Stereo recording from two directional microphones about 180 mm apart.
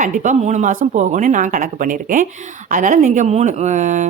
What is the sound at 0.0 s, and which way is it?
Speech, 45° right (ahead or behind).